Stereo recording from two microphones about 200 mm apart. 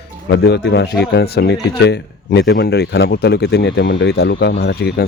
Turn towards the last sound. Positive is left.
turn(degrees=55)  # may be behind; listen again after turning